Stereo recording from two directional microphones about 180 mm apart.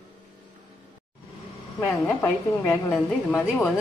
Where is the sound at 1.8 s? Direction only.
10° left (ahead or behind).